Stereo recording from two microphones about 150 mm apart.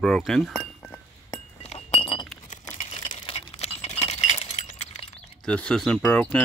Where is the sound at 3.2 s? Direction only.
45° left (ahead or behind).